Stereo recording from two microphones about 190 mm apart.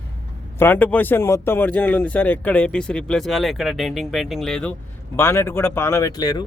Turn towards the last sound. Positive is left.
turn(degrees=20)  # may be behind; listen again after turning